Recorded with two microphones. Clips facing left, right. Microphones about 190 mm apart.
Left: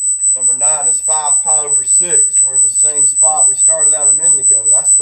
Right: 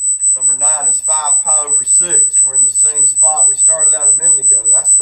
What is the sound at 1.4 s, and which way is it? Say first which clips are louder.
Speech: left 1 dB; 20° left (ahead or behind).